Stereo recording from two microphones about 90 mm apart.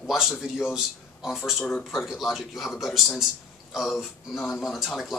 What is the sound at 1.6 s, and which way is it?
Speech, 15° left (ahead or behind).